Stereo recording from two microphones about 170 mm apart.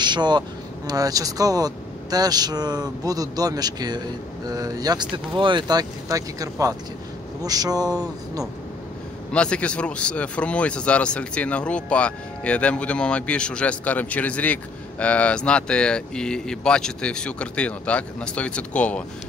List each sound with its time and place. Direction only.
0.0 s speech: 25° right (ahead or behind)
9.3 s speech: 5° left (ahead or behind)